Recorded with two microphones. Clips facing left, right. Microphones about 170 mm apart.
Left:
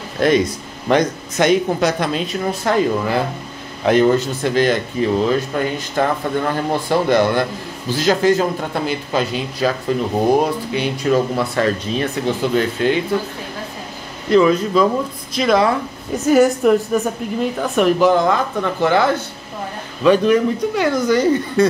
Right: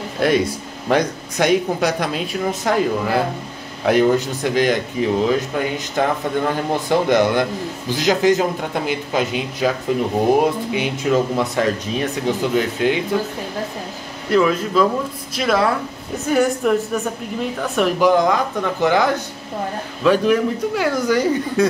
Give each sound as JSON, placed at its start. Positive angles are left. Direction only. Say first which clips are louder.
{"t": 0.2, "sound": "speech", "louder": "left 2 dB", "side_deg": -10}
{"t": 14.3, "sound": "speech", "louder": "left 3 dB", "side_deg": -5}
{"t": 18.0, "sound": "speech", "louder": "left 1 dB", "side_deg": -15}